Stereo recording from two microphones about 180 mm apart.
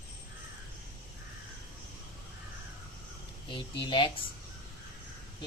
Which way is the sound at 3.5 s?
25° left (ahead or behind).